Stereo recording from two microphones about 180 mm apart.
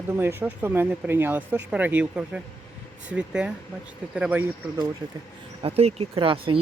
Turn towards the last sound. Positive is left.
turn(degrees=-30)  # may be behind; listen again after turning